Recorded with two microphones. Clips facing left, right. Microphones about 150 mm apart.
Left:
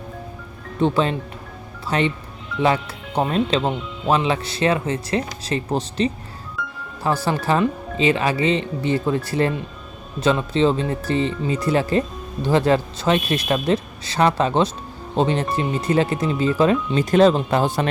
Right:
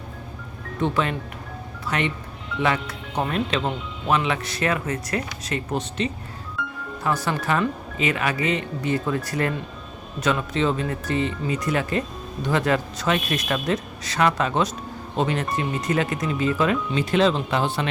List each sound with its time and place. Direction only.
0.8 s speech: 30° left (ahead or behind)